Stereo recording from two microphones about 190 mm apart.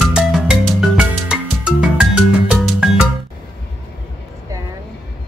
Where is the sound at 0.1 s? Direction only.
5° right (ahead or behind).